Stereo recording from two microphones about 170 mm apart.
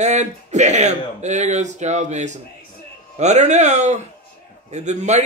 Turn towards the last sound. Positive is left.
turn(degrees=-45)  # may be behind; listen again after turning